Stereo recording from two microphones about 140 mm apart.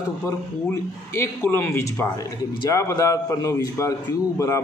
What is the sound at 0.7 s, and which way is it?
A man's voice, 15° left (ahead or behind).